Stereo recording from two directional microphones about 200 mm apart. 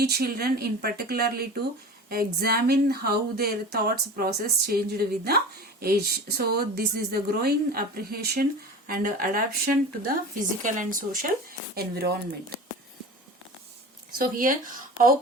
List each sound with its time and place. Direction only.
0.0 s speech: 50° right (ahead or behind)
14.2 s speech: 45° right (ahead or behind)